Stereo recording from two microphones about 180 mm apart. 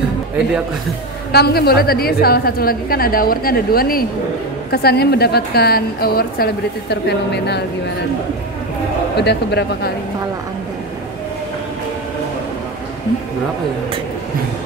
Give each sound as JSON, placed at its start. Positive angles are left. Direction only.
{"t": 1.3, "sound": "a woman's voice", "side_deg": 60}
{"t": 9.1, "sound": "a man's voice", "side_deg": 70}